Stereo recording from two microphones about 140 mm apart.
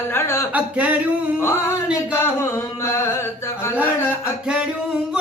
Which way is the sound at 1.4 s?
15° left (ahead or behind).